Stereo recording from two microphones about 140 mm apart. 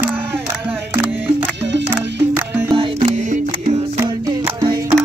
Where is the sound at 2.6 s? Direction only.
35° right (ahead or behind).